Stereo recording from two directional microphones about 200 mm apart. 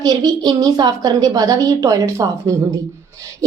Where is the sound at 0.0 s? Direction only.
20° right (ahead or behind).